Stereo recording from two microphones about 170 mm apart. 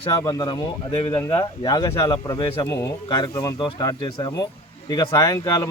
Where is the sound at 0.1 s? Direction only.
25° left (ahead or behind).